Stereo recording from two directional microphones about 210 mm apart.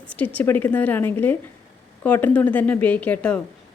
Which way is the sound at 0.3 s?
10° left (ahead or behind).